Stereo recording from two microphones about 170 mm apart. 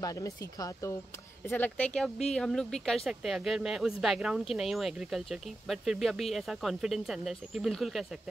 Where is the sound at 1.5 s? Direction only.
10° left (ahead or behind).